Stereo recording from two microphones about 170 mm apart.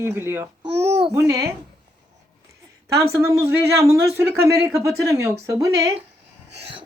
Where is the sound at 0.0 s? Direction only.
15° right (ahead or behind).